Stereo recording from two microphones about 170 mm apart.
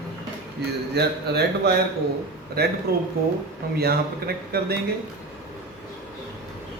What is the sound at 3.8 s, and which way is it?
Speech, 65° right (ahead or behind).